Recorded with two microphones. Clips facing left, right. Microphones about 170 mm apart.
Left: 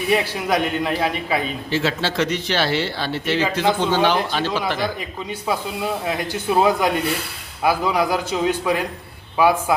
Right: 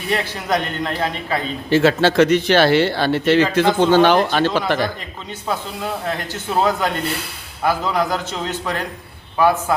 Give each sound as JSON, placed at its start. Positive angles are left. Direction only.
{"t": 0.1, "sound": "speech", "side_deg": 10}
{"t": 1.7, "sound": "speech", "side_deg": -55}
{"t": 5.5, "sound": "speech", "side_deg": 10}